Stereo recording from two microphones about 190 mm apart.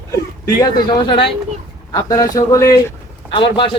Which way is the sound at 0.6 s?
25° left (ahead or behind).